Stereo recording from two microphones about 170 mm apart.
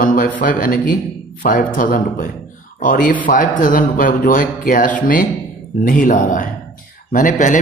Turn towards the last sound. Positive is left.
turn(degrees=50)  # may be behind; listen again after turning